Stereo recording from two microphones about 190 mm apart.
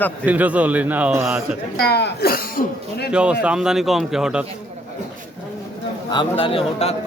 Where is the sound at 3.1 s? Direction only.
5° right (ahead or behind).